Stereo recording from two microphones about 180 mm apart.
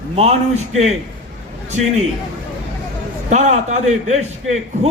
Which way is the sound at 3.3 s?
40° right (ahead or behind).